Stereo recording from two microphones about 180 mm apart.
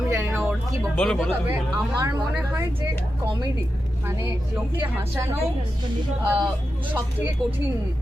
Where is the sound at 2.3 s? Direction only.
5° right (ahead or behind).